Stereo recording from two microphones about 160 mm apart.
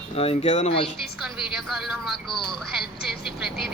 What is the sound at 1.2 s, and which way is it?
Speech, centre (ahead or behind).